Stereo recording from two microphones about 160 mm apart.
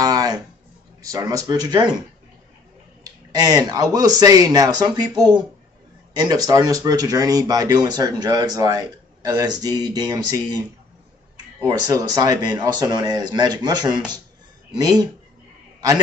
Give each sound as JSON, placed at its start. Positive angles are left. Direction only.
{"t": 0.0, "sound": "music", "side_deg": -20}
{"t": 1.0, "sound": "speech", "side_deg": -20}
{"t": 3.0, "sound": "speech", "side_deg": -25}
{"t": 11.6, "sound": "speech", "side_deg": -25}